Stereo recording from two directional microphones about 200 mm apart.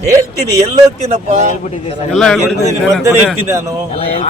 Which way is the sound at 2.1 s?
Centre (ahead or behind).